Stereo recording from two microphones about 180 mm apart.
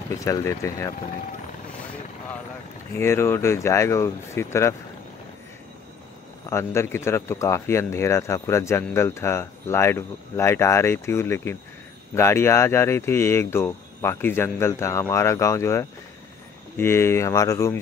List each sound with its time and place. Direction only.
0.2 s a man's voice: 15° left (ahead or behind)
3.0 s a man's voice: 15° left (ahead or behind)
6.5 s a man's voice: 15° left (ahead or behind)